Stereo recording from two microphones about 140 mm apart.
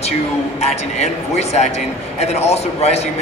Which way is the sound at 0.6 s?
50° left (ahead or behind).